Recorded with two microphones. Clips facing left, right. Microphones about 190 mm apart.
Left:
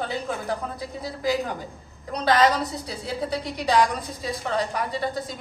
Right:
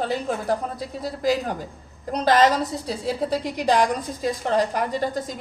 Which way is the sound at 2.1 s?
45° right (ahead or behind).